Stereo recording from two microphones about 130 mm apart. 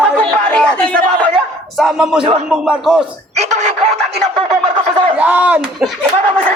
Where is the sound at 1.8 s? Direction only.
5° right (ahead or behind).